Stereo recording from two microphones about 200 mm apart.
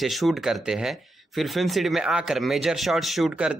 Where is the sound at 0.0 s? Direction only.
Centre (ahead or behind).